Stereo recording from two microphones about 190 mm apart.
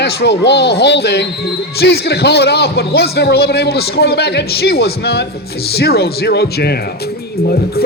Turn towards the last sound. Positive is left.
turn(degrees=55)  # may be behind; listen again after turning